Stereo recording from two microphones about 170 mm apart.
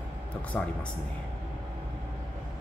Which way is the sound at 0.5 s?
5° left (ahead or behind).